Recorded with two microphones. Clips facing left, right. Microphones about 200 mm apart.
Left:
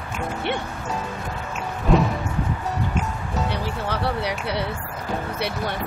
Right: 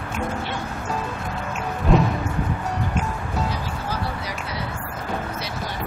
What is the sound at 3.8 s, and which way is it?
Speech, 65° left (ahead or behind).